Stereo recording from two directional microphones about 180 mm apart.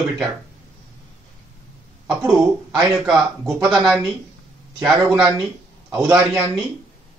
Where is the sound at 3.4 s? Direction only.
20° right (ahead or behind).